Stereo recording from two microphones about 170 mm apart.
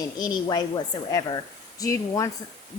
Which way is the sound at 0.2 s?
25° left (ahead or behind).